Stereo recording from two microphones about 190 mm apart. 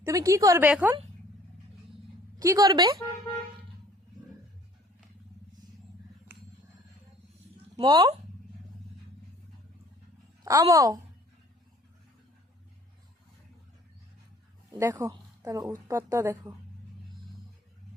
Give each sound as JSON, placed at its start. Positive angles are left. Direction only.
{"t": 0.0, "sound": "a woman's voice", "side_deg": -15}
{"t": 2.4, "sound": "a woman's voice", "side_deg": -20}
{"t": 7.8, "sound": "a woman's voice", "side_deg": -25}
{"t": 10.4, "sound": "a woman's voice", "side_deg": -20}
{"t": 14.8, "sound": "a woman's voice", "side_deg": -15}